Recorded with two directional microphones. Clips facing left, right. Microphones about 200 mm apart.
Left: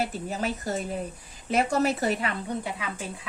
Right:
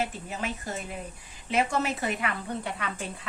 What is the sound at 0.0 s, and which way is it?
A woman's voice, 40° left (ahead or behind).